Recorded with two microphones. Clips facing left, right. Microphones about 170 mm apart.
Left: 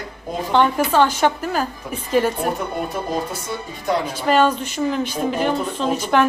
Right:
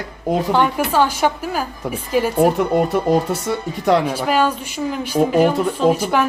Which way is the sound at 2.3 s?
75° right (ahead or behind).